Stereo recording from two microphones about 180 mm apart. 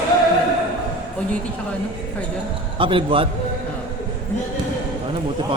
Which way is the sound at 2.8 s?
30° right (ahead or behind).